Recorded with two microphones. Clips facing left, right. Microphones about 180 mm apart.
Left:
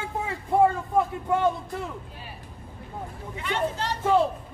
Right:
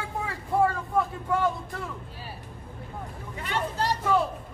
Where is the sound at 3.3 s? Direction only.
40° right (ahead or behind).